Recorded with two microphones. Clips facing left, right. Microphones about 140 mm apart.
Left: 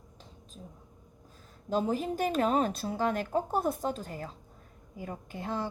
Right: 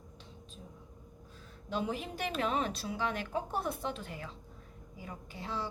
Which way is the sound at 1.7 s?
40° left (ahead or behind).